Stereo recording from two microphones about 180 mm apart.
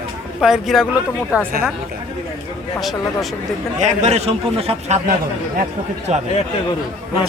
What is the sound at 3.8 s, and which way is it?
A man's voice, 40° right (ahead or behind).